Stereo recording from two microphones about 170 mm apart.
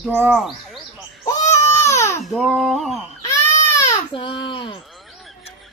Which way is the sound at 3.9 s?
30° left (ahead or behind).